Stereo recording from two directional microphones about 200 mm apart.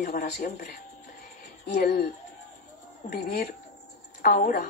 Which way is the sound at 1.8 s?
55° left (ahead or behind).